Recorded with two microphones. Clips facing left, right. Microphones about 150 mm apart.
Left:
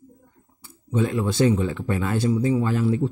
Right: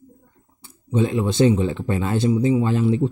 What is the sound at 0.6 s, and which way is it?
A man's voice, 20° right (ahead or behind).